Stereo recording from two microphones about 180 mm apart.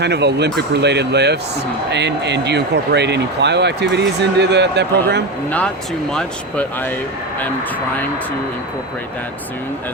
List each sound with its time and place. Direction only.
0.0 s speech: 70° right (ahead or behind)
5.5 s speech: 5° left (ahead or behind)